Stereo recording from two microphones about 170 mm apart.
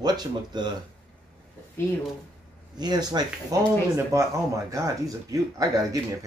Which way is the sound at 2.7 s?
25° right (ahead or behind).